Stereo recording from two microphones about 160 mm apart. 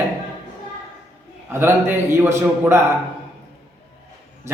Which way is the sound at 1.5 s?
15° right (ahead or behind).